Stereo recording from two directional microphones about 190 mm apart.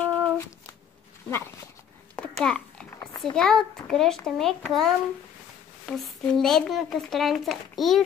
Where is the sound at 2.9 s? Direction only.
25° left (ahead or behind).